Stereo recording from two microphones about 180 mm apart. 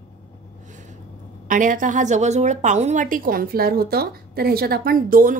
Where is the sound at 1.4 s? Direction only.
45° right (ahead or behind).